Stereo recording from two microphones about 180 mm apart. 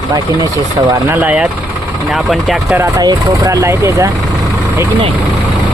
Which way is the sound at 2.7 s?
20° right (ahead or behind).